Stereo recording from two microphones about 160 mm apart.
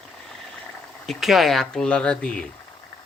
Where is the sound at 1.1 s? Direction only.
Centre (ahead or behind).